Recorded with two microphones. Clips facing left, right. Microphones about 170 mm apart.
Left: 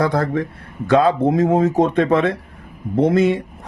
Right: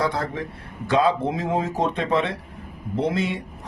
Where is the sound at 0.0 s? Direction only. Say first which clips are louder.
Left 6 dB; 50° left (ahead or behind).